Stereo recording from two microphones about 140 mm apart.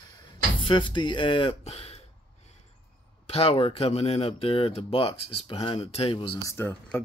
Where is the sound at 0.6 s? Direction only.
35° left (ahead or behind).